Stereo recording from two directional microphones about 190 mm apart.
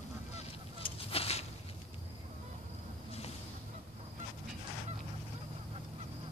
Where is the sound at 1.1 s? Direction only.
30° left (ahead or behind).